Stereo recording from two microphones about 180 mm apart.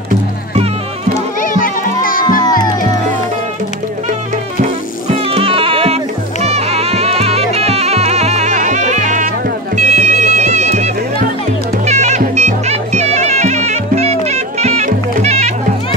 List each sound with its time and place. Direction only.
1.4 s music: 50° left (ahead or behind)
5.1 s music: 35° right (ahead or behind)